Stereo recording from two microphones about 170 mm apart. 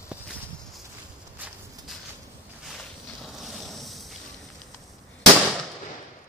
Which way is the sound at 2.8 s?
Centre (ahead or behind).